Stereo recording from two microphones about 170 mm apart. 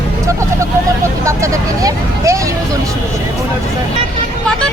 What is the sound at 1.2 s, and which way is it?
Vehicle, 15° right (ahead or behind).